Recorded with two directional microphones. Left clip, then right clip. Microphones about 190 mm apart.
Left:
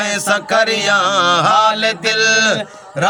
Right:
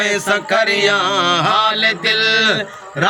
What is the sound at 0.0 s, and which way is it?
Music, 60° left (ahead or behind).